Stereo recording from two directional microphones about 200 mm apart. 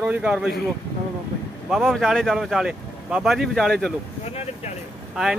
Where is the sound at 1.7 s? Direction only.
Centre (ahead or behind).